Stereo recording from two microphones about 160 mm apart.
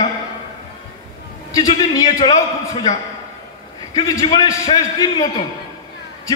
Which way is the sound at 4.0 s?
30° left (ahead or behind).